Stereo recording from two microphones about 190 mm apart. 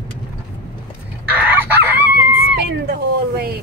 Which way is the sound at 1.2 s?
10° right (ahead or behind).